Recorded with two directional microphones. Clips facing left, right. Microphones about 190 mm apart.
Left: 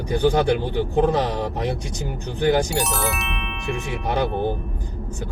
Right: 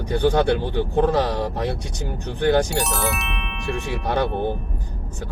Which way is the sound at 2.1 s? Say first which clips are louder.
Even; 15° left (ahead or behind).